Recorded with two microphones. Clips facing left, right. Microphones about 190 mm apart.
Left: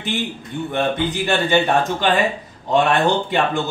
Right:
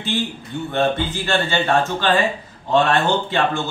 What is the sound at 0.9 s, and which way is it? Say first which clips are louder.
Speech: left 2 dB; 15° left (ahead or behind).